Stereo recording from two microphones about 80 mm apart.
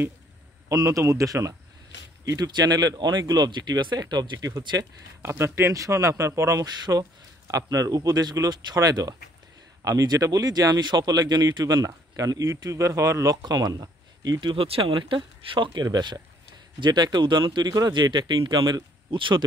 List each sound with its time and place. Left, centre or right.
0.8 s speech: right
2.3 s speech: right
5.2 s a man's voice: right
6.6 s speech: right
11.6 s speech: right
13.4 s speech: right
14.4 s speech: right